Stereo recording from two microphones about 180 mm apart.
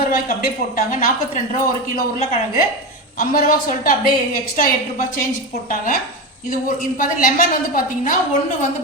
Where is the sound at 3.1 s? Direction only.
55° left (ahead or behind).